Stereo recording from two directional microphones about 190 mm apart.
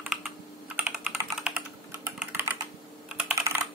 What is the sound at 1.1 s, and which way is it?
Typing, 15° right (ahead or behind).